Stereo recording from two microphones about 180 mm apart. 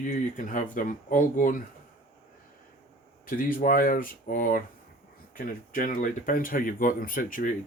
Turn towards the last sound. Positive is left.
turn(degrees=50)  # may be behind; listen again after turning